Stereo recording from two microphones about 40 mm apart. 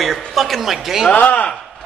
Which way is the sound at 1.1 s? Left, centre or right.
Left.